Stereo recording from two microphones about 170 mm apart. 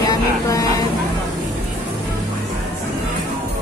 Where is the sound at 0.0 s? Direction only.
20° left (ahead or behind).